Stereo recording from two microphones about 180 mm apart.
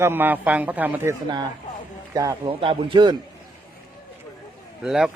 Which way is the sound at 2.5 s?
30° right (ahead or behind).